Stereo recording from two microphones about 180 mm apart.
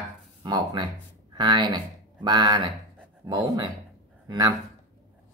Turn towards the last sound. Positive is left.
turn(degrees=-25)  # may be behind; listen again after turning